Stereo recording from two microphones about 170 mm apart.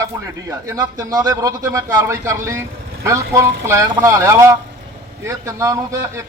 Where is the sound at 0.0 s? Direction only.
20° right (ahead or behind).